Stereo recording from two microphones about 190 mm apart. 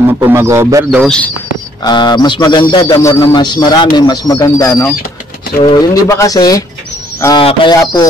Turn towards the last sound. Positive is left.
turn(degrees=30)  # may be behind; listen again after turning